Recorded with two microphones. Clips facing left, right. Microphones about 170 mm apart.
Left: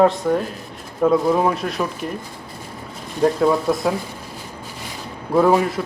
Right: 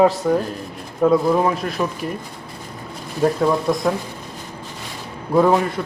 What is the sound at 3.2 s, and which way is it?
Speech, centre (ahead or behind).